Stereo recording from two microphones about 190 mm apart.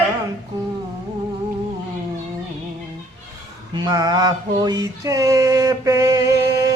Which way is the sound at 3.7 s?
20° right (ahead or behind).